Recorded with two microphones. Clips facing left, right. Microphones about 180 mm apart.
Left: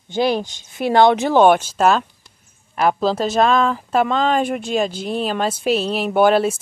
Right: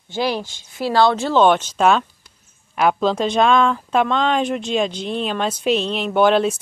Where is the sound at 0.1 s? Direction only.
20° left (ahead or behind).